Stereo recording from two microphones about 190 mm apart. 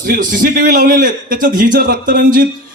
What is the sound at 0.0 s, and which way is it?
A man's voice, 45° right (ahead or behind).